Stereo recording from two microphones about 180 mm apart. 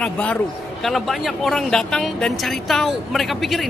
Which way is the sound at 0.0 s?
5° left (ahead or behind).